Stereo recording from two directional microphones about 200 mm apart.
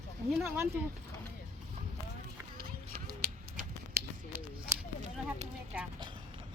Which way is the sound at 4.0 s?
45° right (ahead or behind).